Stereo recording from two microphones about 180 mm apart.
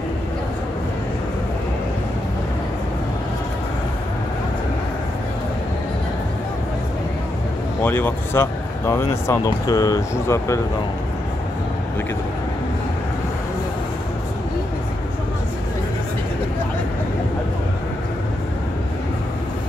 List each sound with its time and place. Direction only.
7.8 s speech: 10° left (ahead or behind)